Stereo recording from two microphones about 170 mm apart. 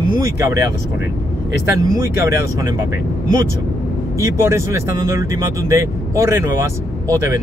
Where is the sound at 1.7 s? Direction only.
20° right (ahead or behind).